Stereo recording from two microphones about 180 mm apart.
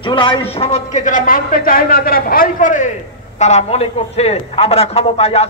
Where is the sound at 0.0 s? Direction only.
25° left (ahead or behind).